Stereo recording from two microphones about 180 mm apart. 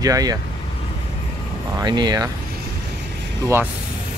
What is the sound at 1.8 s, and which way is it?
Speech, 25° right (ahead or behind).